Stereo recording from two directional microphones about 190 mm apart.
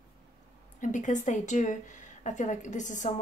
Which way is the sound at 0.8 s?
40° left (ahead or behind).